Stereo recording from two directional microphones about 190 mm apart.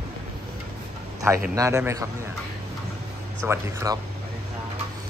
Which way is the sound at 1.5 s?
15° right (ahead or behind).